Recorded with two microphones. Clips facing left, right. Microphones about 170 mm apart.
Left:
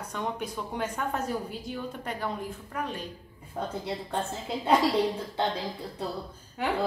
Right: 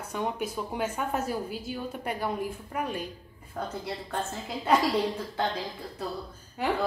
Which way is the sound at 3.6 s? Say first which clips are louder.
Left 1 dB; 25° left (ahead or behind).